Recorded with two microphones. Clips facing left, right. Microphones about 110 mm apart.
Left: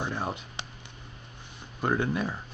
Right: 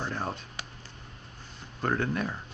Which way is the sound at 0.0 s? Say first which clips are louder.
Left 1 dB; 10° left (ahead or behind).